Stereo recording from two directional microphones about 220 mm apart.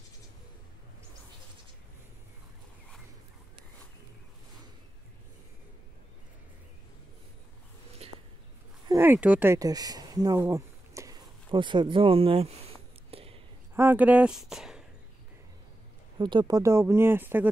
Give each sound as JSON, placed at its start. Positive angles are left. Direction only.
{"t": 8.8, "sound": "a sound", "side_deg": -10}
{"t": 13.7, "sound": "speech", "side_deg": -10}
{"t": 16.2, "sound": "speech", "side_deg": -20}